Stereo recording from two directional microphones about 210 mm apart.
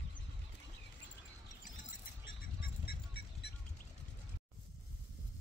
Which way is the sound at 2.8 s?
50° left (ahead or behind).